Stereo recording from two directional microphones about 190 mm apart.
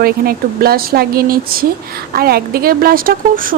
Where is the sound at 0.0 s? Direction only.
50° right (ahead or behind).